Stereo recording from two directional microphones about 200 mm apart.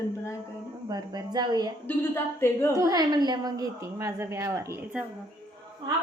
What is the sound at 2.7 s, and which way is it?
A woman's voice, 15° right (ahead or behind).